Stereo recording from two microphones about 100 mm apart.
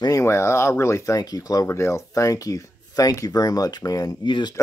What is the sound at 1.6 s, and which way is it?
Speech, 30° left (ahead or behind).